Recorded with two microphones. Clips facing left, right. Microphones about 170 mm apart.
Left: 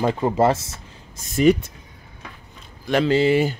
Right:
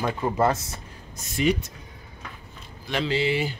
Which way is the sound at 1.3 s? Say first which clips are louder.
Left 7 dB; 45° left (ahead or behind).